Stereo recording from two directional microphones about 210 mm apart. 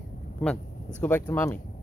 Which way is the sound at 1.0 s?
10° left (ahead or behind).